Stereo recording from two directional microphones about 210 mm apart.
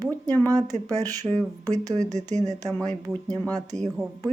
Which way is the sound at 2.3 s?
35° right (ahead or behind).